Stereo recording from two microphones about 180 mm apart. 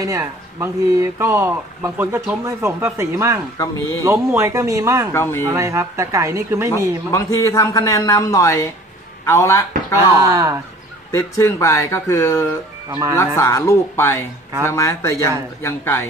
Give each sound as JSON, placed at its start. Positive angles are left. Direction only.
{"t": 0.0, "sound": "speech", "side_deg": -15}
{"t": 5.1, "sound": "a man's voice", "side_deg": 15}
{"t": 5.5, "sound": "speech", "side_deg": -15}
{"t": 7.1, "sound": "a man's voice", "side_deg": 15}
{"t": 9.9, "sound": "speech", "side_deg": -15}
{"t": 11.1, "sound": "a man's voice", "side_deg": 15}